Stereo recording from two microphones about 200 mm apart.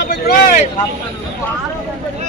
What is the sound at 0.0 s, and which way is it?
Vehicle, 50° left (ahead or behind).